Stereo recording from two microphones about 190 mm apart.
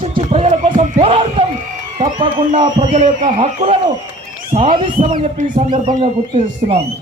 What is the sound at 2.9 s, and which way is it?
A man's voice, 40° right (ahead or behind).